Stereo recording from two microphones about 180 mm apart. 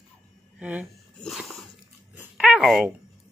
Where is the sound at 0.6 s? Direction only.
10° right (ahead or behind).